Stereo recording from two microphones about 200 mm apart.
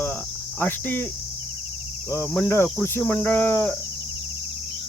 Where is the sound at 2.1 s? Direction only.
10° left (ahead or behind).